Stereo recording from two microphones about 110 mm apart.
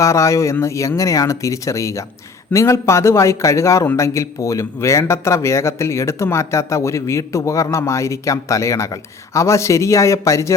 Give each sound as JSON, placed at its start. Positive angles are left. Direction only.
{"t": 0.0, "sound": "speech", "side_deg": 30}